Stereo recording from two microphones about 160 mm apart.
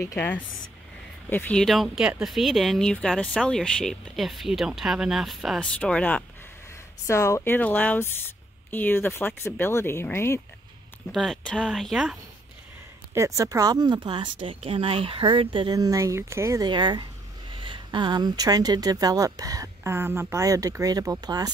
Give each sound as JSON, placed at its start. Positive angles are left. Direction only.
{"t": 0.0, "sound": "speech", "side_deg": 15}
{"t": 7.1, "sound": "speech", "side_deg": 15}
{"t": 11.1, "sound": "speech", "side_deg": 5}
{"t": 13.1, "sound": "a woman's voice", "side_deg": -20}